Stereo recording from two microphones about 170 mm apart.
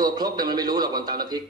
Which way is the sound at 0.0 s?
25° right (ahead or behind).